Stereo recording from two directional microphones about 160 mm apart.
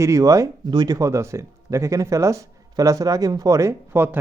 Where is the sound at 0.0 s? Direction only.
20° right (ahead or behind).